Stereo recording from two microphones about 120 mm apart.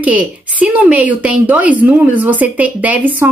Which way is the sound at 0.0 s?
10° right (ahead or behind).